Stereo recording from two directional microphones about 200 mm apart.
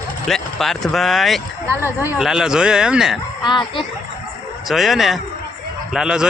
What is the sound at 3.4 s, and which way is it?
Speech, 20° left (ahead or behind).